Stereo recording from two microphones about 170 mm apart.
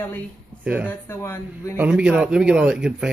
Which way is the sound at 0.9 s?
15° left (ahead or behind).